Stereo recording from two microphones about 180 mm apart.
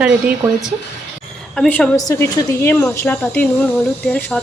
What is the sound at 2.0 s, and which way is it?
Speech, 15° left (ahead or behind).